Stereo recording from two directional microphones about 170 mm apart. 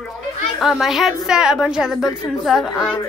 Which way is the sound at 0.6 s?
Centre (ahead or behind).